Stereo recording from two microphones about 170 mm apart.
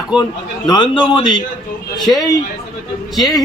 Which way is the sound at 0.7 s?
25° left (ahead or behind).